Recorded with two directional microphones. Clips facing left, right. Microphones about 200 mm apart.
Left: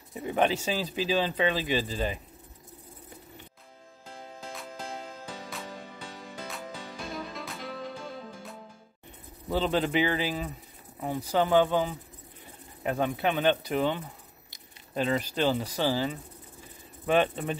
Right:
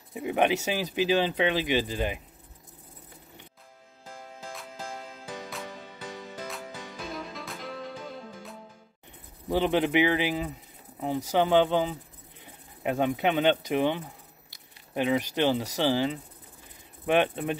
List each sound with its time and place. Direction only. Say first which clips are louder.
0.1 s speech: right 1 dB; 10° right (ahead or behind)
6.4 s music: left 2 dB; centre (ahead or behind)
9.5 s speech: right 2 dB; 15° right (ahead or behind)